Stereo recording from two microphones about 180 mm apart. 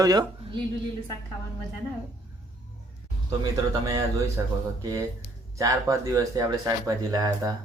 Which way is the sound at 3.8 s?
20° right (ahead or behind).